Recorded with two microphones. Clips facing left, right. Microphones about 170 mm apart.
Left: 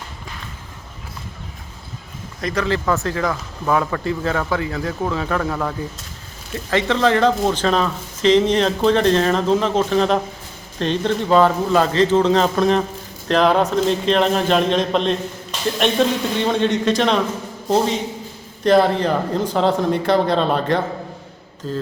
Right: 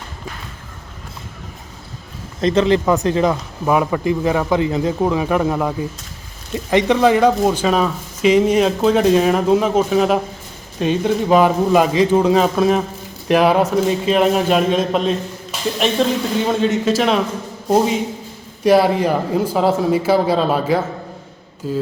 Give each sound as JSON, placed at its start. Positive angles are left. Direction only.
{"t": 2.4, "sound": "speech", "side_deg": -25}